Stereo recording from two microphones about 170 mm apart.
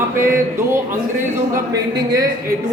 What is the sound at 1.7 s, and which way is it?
Speech, 20° right (ahead or behind).